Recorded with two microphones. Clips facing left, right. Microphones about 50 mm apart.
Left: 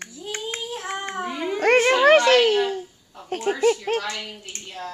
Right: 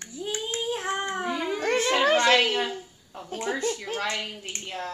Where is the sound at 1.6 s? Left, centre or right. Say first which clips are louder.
Left 9 dB; left.